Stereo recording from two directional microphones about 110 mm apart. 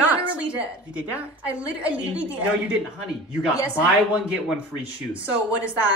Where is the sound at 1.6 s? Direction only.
10° right (ahead or behind).